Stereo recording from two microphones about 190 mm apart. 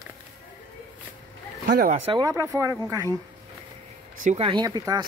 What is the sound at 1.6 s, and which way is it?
Speech, 45° right (ahead or behind).